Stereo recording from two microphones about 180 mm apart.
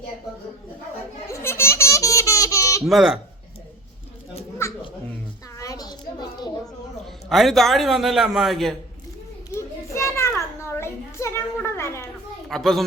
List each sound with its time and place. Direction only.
1.3 s baby laughter: 15° left (ahead or behind)
2.8 s a man's voice: 5° right (ahead or behind)
5.5 s a sound: 20° left (ahead or behind)
7.3 s a man's voice: centre (ahead or behind)
9.6 s children playing: 15° left (ahead or behind)
12.5 s a man's voice: centre (ahead or behind)